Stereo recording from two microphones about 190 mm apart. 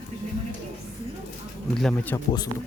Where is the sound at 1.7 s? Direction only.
5° left (ahead or behind).